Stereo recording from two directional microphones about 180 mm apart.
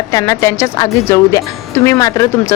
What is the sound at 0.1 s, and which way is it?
A woman's voice, 20° left (ahead or behind).